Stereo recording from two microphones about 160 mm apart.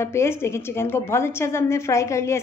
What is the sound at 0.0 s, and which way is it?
A woman's voice, 15° left (ahead or behind).